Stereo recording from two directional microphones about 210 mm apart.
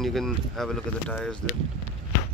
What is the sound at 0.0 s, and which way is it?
Speech, centre (ahead or behind).